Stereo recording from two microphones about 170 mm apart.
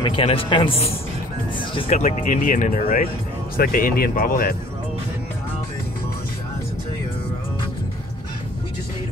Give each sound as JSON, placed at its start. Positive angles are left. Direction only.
{"t": 0.0, "sound": "a man's voice", "side_deg": 30}